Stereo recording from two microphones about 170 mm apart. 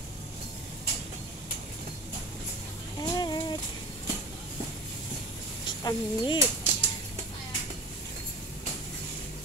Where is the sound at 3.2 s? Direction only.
25° left (ahead or behind).